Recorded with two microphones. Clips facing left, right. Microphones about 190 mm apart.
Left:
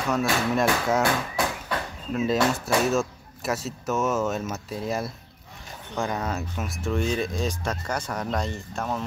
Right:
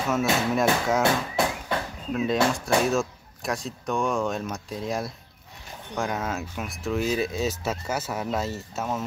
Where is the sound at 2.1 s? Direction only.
Centre (ahead or behind).